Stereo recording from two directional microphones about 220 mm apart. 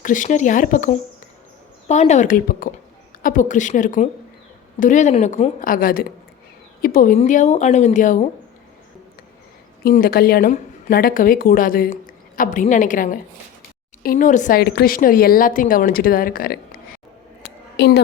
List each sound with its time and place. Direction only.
0.0 s speech: 35° left (ahead or behind)
9.8 s a woman's voice: 40° left (ahead or behind)